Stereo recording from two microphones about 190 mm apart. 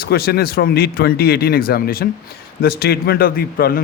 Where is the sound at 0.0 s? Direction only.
55° left (ahead or behind).